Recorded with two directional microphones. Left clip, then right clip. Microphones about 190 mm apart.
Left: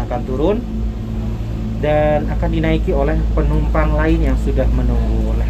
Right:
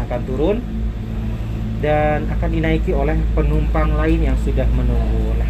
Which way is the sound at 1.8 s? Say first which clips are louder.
Left 2 dB; 5° right (ahead or behind).